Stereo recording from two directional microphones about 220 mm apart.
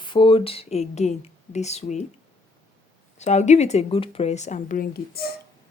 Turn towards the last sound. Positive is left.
turn(degrees=40)  # may be behind; listen again after turning